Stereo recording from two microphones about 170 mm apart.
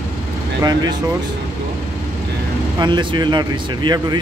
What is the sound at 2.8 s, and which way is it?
Speech, 25° right (ahead or behind).